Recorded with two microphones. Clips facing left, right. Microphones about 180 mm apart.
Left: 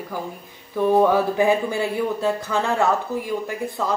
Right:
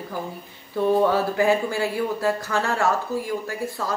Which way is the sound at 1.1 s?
20° left (ahead or behind).